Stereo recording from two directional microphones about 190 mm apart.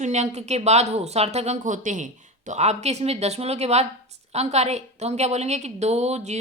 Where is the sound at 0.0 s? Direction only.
35° right (ahead or behind).